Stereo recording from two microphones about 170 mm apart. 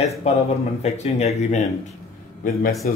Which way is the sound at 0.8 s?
40° left (ahead or behind).